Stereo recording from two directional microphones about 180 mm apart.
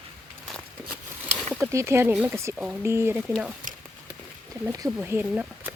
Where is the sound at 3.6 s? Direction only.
50° right (ahead or behind).